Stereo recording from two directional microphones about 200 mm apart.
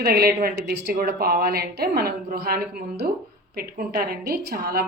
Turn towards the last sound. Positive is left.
turn(degrees=-50)  # may be behind; listen again after turning